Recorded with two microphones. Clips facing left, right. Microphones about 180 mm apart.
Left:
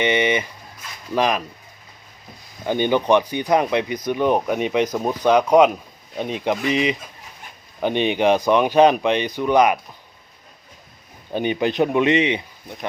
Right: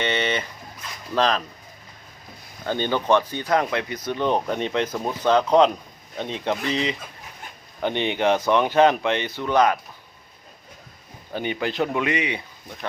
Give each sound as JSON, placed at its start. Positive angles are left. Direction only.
{"t": 0.0, "sound": "speech", "side_deg": 15}
{"t": 2.6, "sound": "speech", "side_deg": 15}
{"t": 11.3, "sound": "speech", "side_deg": 20}